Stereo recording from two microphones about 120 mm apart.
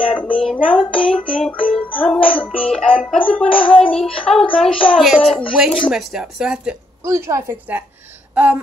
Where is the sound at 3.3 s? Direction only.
10° left (ahead or behind).